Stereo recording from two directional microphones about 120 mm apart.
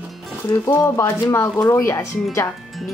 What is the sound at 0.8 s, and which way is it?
Speech, 20° left (ahead or behind).